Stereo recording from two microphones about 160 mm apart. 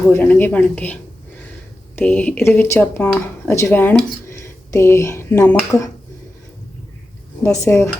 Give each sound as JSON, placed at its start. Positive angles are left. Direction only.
{"t": 0.1, "sound": "speech", "side_deg": 10}
{"t": 2.0, "sound": "speech", "side_deg": 10}
{"t": 7.6, "sound": "a woman's voice", "side_deg": 20}